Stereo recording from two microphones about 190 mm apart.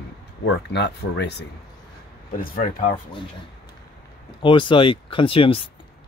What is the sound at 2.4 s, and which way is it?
Speech, 50° left (ahead or behind).